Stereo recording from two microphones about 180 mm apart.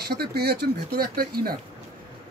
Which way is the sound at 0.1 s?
60° right (ahead or behind).